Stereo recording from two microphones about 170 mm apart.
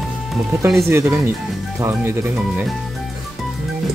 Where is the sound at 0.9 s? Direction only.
15° right (ahead or behind).